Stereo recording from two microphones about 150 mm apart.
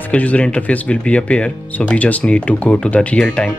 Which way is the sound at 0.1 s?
10° left (ahead or behind).